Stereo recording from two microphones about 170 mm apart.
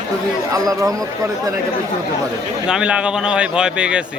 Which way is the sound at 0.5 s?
20° right (ahead or behind).